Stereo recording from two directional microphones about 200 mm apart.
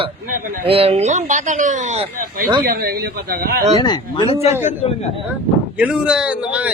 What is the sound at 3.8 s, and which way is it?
Speech, 20° left (ahead or behind).